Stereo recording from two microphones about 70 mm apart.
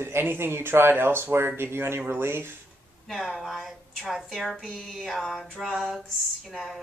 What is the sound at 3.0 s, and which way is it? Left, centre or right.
Speech, centre.